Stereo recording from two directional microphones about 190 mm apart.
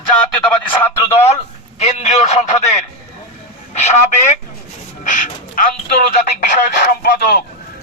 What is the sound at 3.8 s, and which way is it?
A man's voice, 40° left (ahead or behind).